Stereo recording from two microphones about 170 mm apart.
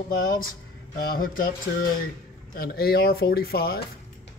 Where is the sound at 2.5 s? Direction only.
65° left (ahead or behind).